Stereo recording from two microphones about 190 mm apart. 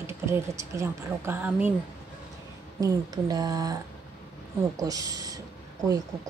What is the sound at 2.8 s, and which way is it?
Speech, 20° right (ahead or behind).